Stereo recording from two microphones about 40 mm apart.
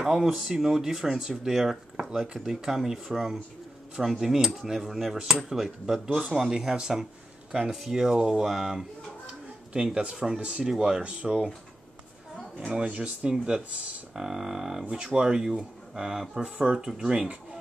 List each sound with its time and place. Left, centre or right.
0.0 s speech: centre
9.2 s a sound: right
9.9 s speech: right
11.1 s speech: right
12.5 s speech: centre
12.8 s speech: right
14.1 s speech: centre
14.9 s speech: right